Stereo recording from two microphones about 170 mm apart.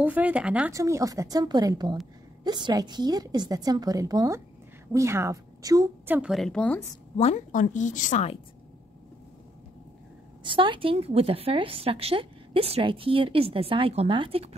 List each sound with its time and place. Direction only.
0.0 s speech: 10° right (ahead or behind)
0.7 s a woman's voice: 20° right (ahead or behind)
6.1 s a woman's voice: centre (ahead or behind)
7.2 s a woman's voice: 40° left (ahead or behind)
10.4 s a woman's voice: 30° right (ahead or behind)